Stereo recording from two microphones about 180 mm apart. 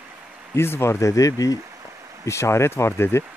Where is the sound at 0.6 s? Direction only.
15° left (ahead or behind).